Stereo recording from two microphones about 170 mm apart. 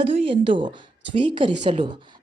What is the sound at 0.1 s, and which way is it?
Speech, 30° right (ahead or behind).